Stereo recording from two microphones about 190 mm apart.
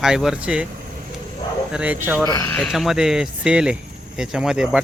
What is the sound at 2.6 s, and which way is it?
Speech, centre (ahead or behind).